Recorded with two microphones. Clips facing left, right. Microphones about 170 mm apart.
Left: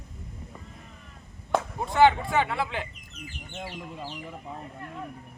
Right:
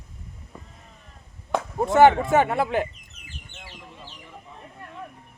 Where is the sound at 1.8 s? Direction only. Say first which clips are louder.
Right 5 dB; 50° right (ahead or behind).